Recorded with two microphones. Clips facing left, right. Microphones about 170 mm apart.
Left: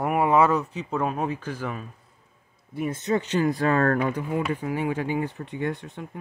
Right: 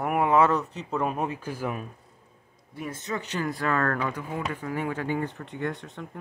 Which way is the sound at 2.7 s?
20° left (ahead or behind).